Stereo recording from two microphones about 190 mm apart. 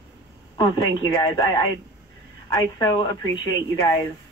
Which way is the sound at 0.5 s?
20° left (ahead or behind).